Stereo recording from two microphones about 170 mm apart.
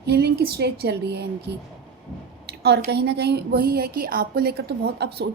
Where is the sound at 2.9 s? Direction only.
75° right (ahead or behind).